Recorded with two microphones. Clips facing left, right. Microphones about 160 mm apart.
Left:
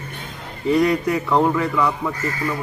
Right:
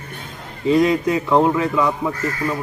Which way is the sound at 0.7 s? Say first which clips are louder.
Right 2 dB; 20° right (ahead or behind).